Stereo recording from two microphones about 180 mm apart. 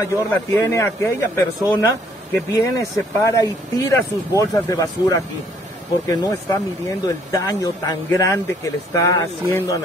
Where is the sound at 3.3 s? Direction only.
15° left (ahead or behind).